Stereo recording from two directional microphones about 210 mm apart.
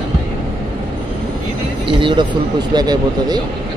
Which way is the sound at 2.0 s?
25° right (ahead or behind).